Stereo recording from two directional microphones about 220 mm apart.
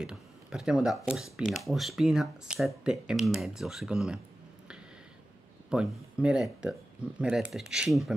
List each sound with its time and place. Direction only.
0.0 s speech: 5° right (ahead or behind)
5.7 s speech: 5° right (ahead or behind)